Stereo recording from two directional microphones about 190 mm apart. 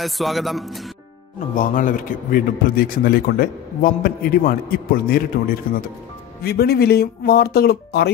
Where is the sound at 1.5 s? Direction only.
45° left (ahead or behind).